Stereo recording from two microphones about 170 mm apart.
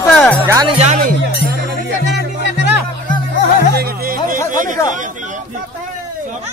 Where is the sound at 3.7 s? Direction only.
60° right (ahead or behind).